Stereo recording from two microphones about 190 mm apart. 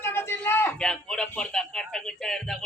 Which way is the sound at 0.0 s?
10° left (ahead or behind).